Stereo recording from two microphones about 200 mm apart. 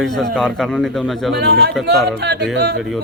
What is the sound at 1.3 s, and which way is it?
Speech, 55° right (ahead or behind).